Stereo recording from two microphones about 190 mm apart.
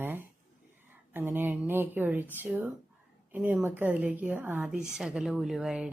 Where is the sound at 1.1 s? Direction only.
10° right (ahead or behind).